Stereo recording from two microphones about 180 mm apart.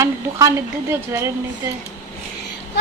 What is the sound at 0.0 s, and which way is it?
A woman's voice, 15° right (ahead or behind).